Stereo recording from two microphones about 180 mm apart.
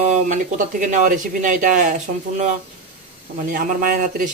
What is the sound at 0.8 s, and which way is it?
A man's voice, 45° right (ahead or behind).